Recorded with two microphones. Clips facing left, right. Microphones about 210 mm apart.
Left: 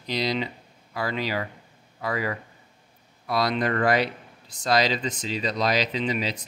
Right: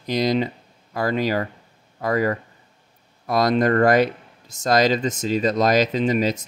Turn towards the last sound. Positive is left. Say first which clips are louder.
# right 7 dB
turn(degrees=-45)  # may be behind; listen again after turning